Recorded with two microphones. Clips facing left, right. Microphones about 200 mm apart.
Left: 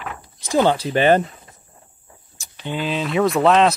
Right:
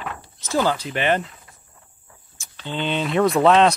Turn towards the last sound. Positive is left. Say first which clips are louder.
# even
turn(degrees=0)  # may be behind; listen again after turning